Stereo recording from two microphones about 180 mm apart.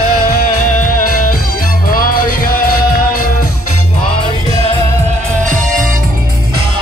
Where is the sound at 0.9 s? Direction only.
50° left (ahead or behind).